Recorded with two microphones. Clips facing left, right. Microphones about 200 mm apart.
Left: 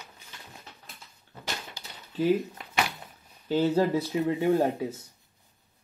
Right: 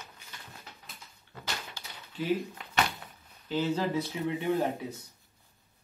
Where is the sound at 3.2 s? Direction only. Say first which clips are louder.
Left 5 dB; 40° left (ahead or behind).